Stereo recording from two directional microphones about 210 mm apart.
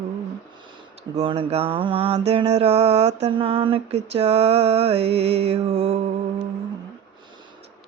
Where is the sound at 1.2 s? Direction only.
25° right (ahead or behind).